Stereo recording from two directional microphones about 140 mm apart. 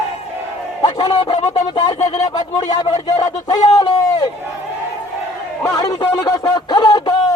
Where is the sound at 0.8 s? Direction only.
30° left (ahead or behind).